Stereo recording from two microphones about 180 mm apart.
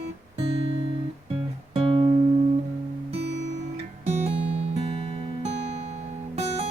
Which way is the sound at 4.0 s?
40° right (ahead or behind).